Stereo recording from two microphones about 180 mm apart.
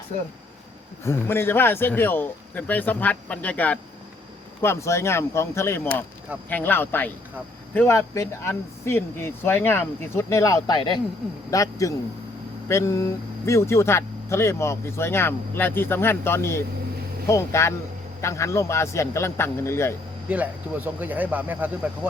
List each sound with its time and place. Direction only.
1.0 s speech: 15° left (ahead or behind)
20.3 s speech: 10° right (ahead or behind)